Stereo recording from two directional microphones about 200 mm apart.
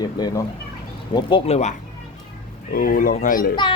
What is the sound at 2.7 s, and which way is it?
Speech, 45° left (ahead or behind).